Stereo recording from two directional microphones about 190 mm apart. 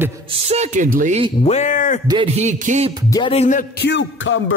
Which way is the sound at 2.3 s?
40° right (ahead or behind).